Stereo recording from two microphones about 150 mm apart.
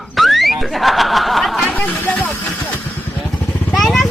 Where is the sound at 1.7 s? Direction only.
10° left (ahead or behind).